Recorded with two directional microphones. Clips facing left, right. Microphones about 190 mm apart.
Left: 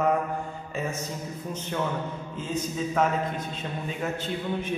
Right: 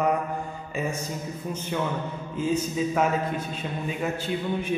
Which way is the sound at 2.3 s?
10° right (ahead or behind).